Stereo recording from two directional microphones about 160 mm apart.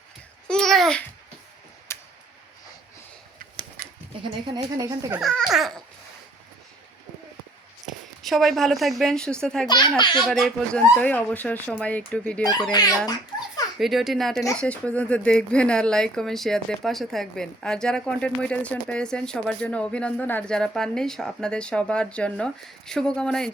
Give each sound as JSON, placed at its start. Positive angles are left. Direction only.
{"t": 0.4, "sound": "babbling", "side_deg": 5}
{"t": 1.9, "sound": "tick-tock", "side_deg": 15}
{"t": 4.2, "sound": "speech", "side_deg": -25}
{"t": 5.2, "sound": "speech", "side_deg": 0}
{"t": 7.9, "sound": "a woman's voice", "side_deg": 0}
{"t": 9.6, "sound": "a child's voice", "side_deg": 25}
{"t": 10.2, "sound": "speech", "side_deg": 0}
{"t": 12.7, "sound": "a child's voice", "side_deg": 25}
{"t": 13.7, "sound": "speech", "side_deg": 0}